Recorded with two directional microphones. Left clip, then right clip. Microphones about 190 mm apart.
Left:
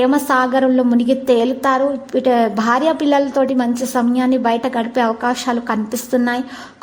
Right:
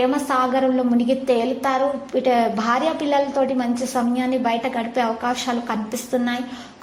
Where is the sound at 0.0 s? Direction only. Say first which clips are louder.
Left 5 dB; 35° left (ahead or behind).